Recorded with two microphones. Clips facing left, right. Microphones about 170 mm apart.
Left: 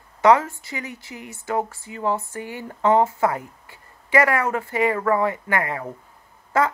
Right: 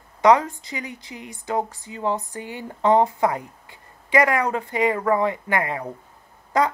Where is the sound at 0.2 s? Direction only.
15° right (ahead or behind).